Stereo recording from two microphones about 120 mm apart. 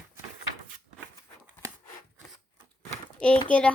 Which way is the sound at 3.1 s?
10° left (ahead or behind).